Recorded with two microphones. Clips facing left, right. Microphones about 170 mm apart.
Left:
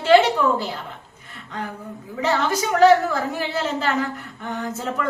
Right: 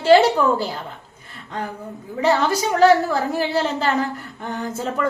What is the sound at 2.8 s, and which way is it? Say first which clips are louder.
A woman's voice: even; 35° right (ahead or behind).